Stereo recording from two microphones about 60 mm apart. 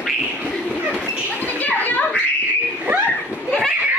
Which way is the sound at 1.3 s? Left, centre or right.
Left.